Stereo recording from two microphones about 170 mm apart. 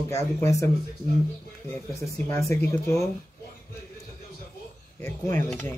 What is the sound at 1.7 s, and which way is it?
Speech, 15° left (ahead or behind).